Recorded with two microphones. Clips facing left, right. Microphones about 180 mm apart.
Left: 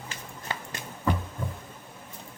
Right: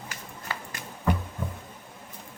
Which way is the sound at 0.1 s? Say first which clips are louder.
Left 2 dB; 25° left (ahead or behind).